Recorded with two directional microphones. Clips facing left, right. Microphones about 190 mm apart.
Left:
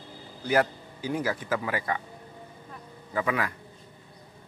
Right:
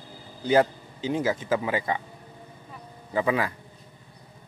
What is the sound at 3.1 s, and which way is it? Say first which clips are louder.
Speech: right 3 dB; 25° right (ahead or behind).